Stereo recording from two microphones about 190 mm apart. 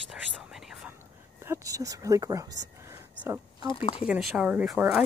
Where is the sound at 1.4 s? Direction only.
15° right (ahead or behind).